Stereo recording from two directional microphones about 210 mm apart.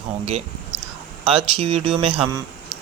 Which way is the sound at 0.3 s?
30° right (ahead or behind).